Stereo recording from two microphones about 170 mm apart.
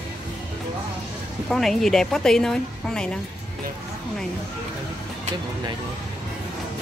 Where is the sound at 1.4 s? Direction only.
Centre (ahead or behind).